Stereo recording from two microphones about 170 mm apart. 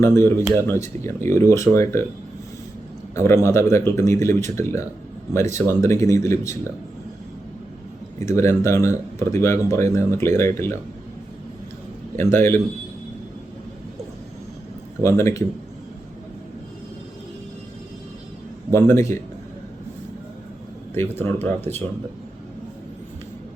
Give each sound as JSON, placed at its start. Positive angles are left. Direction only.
{"t": 0.0, "sound": "speech", "side_deg": 15}
{"t": 3.2, "sound": "speech", "side_deg": 15}
{"t": 8.2, "sound": "speech", "side_deg": 15}
{"t": 12.1, "sound": "speech", "side_deg": 15}
{"t": 15.0, "sound": "speech", "side_deg": 15}
{"t": 18.7, "sound": "speech", "side_deg": 15}
{"t": 20.9, "sound": "speech", "side_deg": 15}